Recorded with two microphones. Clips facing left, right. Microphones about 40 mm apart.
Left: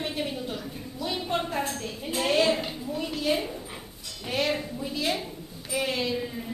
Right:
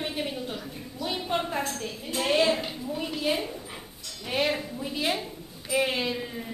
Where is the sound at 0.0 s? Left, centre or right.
Centre.